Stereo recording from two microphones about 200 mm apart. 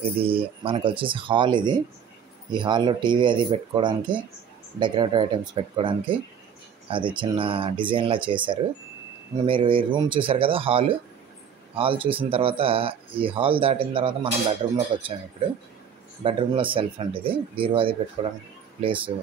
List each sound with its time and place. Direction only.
0.2 s speech: 25° right (ahead or behind)
16.2 s speech: 25° right (ahead or behind)